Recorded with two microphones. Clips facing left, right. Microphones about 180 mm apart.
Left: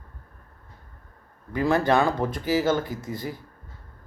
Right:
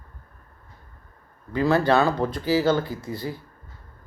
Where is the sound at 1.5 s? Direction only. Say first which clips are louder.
Right 2 dB; 15° left (ahead or behind).